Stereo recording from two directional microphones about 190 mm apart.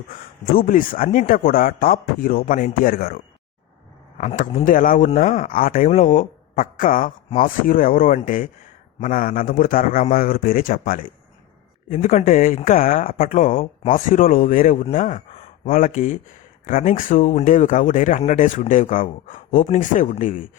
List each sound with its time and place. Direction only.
0.5 s speech: 45° left (ahead or behind)
4.2 s speech: 40° left (ahead or behind)